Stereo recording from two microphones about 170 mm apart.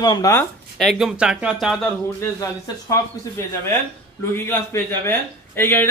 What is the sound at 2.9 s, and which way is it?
Speech, 15° left (ahead or behind).